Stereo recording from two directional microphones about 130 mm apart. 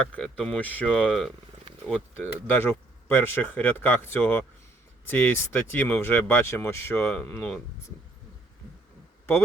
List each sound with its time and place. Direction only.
0.0 s speech: 10° left (ahead or behind)